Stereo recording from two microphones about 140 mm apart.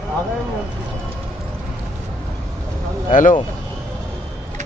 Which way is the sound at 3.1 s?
65° left (ahead or behind).